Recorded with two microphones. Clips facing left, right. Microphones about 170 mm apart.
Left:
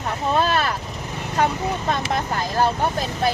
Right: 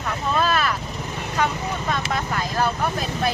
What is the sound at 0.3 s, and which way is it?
Boat, 30° left (ahead or behind).